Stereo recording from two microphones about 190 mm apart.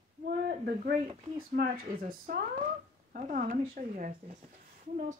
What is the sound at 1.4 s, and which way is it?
A woman's voice, 50° right (ahead or behind).